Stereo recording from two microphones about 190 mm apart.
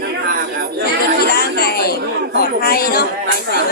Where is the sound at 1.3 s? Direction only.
55° left (ahead or behind).